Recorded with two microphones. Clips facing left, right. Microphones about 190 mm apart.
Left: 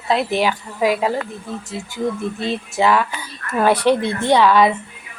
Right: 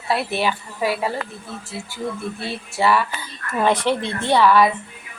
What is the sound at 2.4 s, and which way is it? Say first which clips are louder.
Speech: left 3 dB; 20° left (ahead or behind).